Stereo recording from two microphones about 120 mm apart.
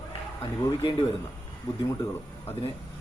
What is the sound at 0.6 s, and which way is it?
Speech, 35° left (ahead or behind).